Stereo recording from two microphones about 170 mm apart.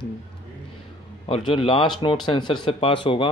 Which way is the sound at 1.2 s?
30° left (ahead or behind).